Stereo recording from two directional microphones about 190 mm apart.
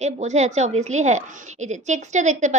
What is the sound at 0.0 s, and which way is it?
A woman's voice, 35° right (ahead or behind).